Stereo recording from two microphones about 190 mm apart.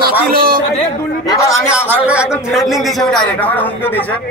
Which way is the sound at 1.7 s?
5° right (ahead or behind).